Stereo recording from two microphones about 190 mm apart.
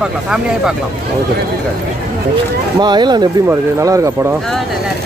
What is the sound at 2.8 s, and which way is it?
Speech, 25° right (ahead or behind).